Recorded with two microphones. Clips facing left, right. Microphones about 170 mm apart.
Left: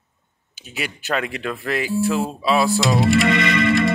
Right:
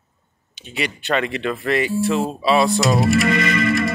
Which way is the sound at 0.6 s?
5° left (ahead or behind).